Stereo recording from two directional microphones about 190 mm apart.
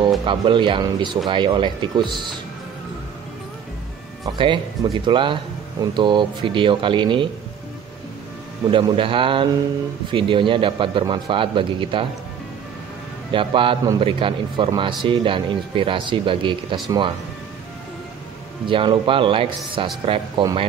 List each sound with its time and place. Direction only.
0.2 s speech: 25° right (ahead or behind)
4.4 s speech: 25° right (ahead or behind)
8.6 s speech: 25° right (ahead or behind)
13.3 s speech: 25° right (ahead or behind)
18.7 s speech: 25° right (ahead or behind)